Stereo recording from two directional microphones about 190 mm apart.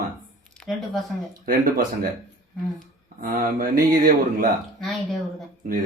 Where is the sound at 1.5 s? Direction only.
50° right (ahead or behind).